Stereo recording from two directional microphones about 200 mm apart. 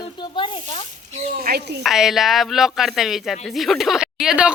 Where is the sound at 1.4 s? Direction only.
50° right (ahead or behind).